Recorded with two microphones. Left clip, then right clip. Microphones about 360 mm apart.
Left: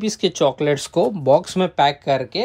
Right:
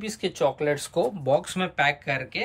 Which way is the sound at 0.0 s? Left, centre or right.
Centre.